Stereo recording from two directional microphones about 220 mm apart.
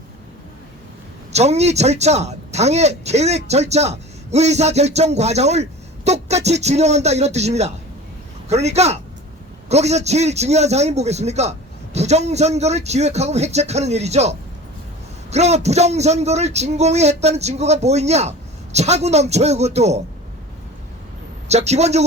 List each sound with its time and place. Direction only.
1.3 s a man's voice: 30° right (ahead or behind)
21.4 s a man's voice: 30° right (ahead or behind)